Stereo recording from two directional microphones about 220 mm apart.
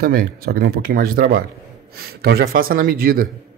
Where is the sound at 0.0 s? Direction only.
40° right (ahead or behind).